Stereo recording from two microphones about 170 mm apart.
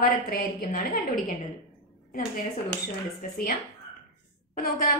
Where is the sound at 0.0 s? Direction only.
60° left (ahead or behind).